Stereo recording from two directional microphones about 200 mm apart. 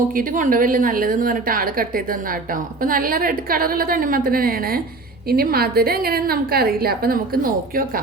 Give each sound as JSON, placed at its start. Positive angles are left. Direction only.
{"t": 0.2, "sound": "a woman's voice", "side_deg": -45}